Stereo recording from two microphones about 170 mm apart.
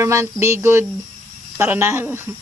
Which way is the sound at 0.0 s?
15° right (ahead or behind).